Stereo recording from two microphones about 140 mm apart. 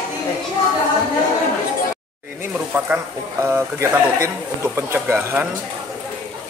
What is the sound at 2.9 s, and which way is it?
Speech, 15° right (ahead or behind).